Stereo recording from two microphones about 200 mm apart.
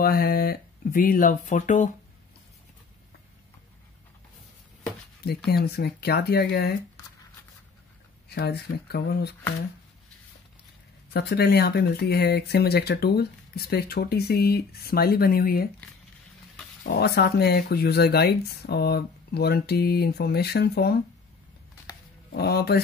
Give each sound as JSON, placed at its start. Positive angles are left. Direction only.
{"t": 0.0, "sound": "speech", "side_deg": 50}
{"t": 5.5, "sound": "speech", "side_deg": 55}
{"t": 8.3, "sound": "speech", "side_deg": 55}
{"t": 11.1, "sound": "speech", "side_deg": 55}
{"t": 16.8, "sound": "speech", "side_deg": 50}
{"t": 22.3, "sound": "speech", "side_deg": 50}